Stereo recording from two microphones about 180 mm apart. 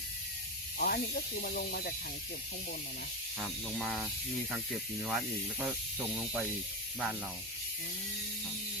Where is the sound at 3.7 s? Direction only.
5° right (ahead or behind).